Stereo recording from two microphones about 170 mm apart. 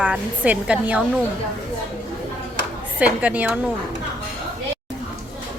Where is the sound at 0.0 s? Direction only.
10° right (ahead or behind).